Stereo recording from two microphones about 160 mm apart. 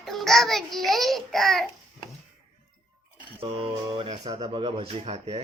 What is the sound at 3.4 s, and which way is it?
Speech, 35° right (ahead or behind).